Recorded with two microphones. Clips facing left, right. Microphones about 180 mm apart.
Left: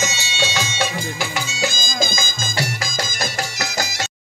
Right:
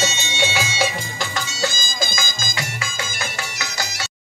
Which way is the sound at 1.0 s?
5° left (ahead or behind).